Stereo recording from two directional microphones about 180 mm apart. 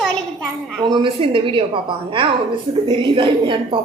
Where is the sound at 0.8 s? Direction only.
25° right (ahead or behind).